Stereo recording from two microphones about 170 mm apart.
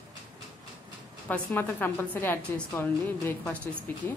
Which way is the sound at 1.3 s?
10° left (ahead or behind).